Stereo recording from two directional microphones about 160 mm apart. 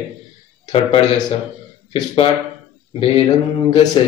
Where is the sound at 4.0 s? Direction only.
30° left (ahead or behind).